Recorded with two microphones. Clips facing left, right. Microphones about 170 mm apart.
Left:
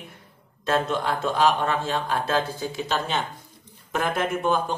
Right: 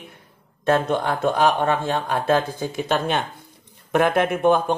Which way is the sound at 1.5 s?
50° right (ahead or behind).